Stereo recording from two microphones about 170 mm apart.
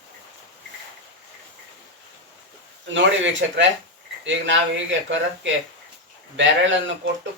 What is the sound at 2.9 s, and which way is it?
Speech, 90° right.